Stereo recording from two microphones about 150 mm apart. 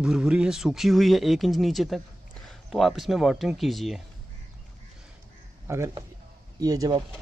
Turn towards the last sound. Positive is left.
turn(degrees=-25)  # may be behind; listen again after turning